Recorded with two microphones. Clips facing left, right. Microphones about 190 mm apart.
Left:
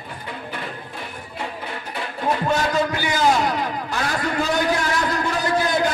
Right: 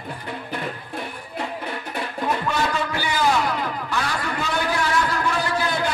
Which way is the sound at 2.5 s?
40° left (ahead or behind).